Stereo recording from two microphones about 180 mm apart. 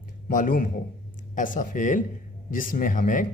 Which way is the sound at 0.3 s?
50° left (ahead or behind).